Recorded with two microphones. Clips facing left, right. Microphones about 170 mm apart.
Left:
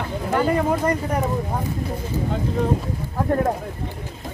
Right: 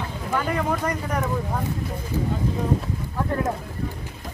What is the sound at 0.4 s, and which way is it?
Speech, 30° left (ahead or behind).